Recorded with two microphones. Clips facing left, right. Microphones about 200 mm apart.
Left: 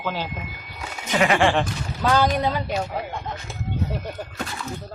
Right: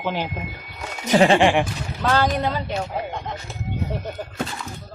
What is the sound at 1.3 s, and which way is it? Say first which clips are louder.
Speech: right 2 dB; 15° right (ahead or behind).